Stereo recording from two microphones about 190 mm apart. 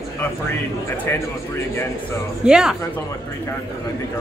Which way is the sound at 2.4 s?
5° right (ahead or behind).